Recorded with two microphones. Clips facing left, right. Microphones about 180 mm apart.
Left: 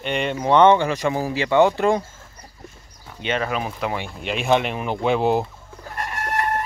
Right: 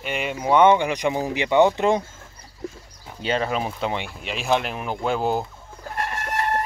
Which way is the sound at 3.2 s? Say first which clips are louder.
Even; 30° right (ahead or behind).